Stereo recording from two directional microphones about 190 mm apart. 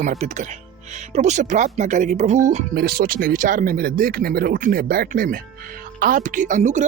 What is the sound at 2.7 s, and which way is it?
Speech, 55° right (ahead or behind).